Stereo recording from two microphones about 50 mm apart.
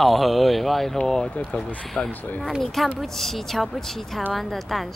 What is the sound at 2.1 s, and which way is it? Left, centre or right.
Speech, left.